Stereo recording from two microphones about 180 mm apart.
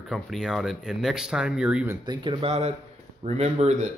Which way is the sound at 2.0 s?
25° right (ahead or behind).